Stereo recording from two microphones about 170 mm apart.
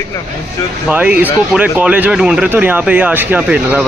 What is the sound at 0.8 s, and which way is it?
Speech, 10° right (ahead or behind).